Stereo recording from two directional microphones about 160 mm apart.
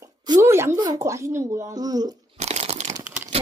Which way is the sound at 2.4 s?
45° right (ahead or behind).